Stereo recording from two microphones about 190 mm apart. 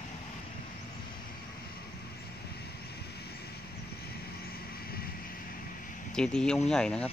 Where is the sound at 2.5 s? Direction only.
60° left (ahead or behind).